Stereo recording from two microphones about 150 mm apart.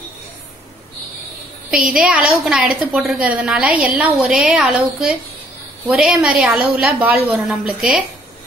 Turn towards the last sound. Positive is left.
turn(degrees=-5)  # may be behind; listen again after turning